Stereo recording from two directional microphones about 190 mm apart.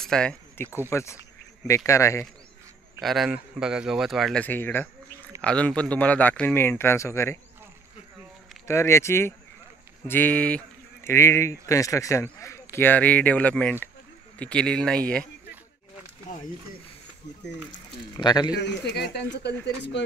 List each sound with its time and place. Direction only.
0.0 s speech: 5° left (ahead or behind)
0.8 s speech: 15° left (ahead or behind)
3.0 s speech: centre (ahead or behind)
8.6 s speech: 15° left (ahead or behind)
16.3 s speech: 40° left (ahead or behind)
18.1 s speech: 20° left (ahead or behind)
18.6 s speech: 65° left (ahead or behind)